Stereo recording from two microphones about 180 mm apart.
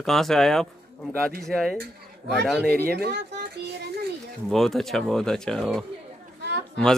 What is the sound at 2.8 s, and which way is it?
Speech, 60° right (ahead or behind).